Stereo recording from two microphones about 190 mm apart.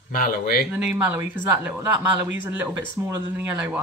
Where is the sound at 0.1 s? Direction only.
50° left (ahead or behind).